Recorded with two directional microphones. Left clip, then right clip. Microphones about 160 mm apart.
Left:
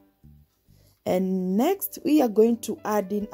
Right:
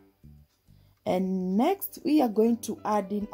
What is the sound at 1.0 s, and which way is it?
Speech, centre (ahead or behind).